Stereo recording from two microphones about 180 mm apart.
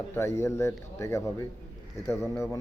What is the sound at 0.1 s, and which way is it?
Speech, 15° left (ahead or behind).